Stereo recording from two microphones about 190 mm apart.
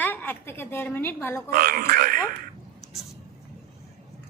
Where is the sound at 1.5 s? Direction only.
50° right (ahead or behind).